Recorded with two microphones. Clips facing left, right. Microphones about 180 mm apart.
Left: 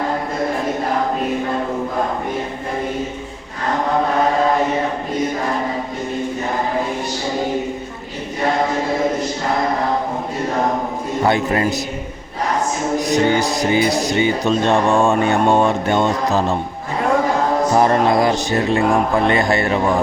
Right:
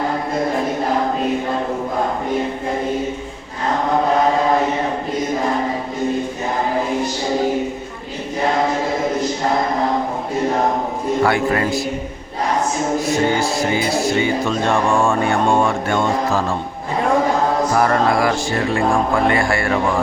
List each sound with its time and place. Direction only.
11.2 s music: 20° left (ahead or behind)
13.0 s speech: 15° left (ahead or behind)
17.7 s music: 20° left (ahead or behind)